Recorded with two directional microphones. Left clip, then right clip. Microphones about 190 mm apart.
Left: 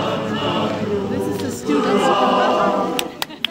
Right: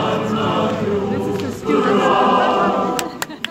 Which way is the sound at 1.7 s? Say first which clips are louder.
Right 2 dB; 45° left (ahead or behind).